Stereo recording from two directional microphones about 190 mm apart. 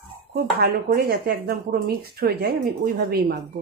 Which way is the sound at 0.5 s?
50° right (ahead or behind).